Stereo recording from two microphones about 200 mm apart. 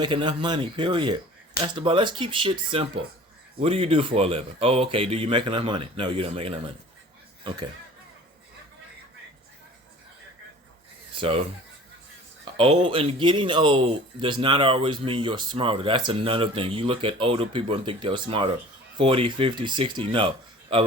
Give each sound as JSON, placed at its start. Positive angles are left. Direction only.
{"t": 0.0, "sound": "speech", "side_deg": -25}
{"t": 11.2, "sound": "speech", "side_deg": -30}
{"t": 12.5, "sound": "speech", "side_deg": -25}